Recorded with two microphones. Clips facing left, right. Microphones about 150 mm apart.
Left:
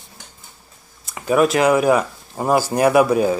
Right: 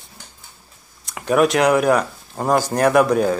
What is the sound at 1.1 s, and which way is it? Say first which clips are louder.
Speech: even; centre (ahead or behind).